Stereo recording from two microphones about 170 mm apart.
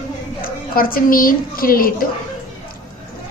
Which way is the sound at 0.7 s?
55° left (ahead or behind).